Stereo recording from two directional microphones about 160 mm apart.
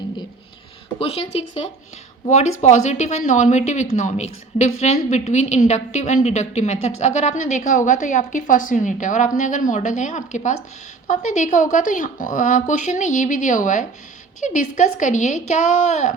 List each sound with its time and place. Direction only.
0.9 s a woman's voice: 35° left (ahead or behind)